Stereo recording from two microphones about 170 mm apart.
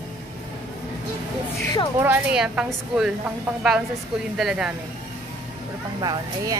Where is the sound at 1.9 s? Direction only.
10° right (ahead or behind).